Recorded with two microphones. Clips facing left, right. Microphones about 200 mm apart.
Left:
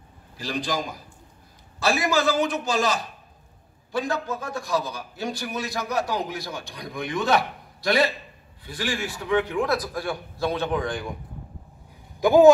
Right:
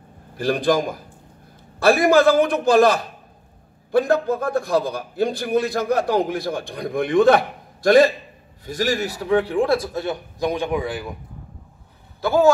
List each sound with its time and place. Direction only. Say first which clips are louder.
0.4 s a man's voice: right 9 dB; 55° right (ahead or behind); by 11.1 s 5° right (ahead or behind)
12.2 s speech: left 3 dB; 15° left (ahead or behind)